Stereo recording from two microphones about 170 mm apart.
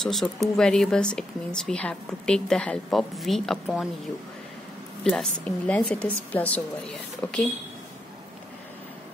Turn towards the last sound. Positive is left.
turn(degrees=5)  # may be behind; listen again after turning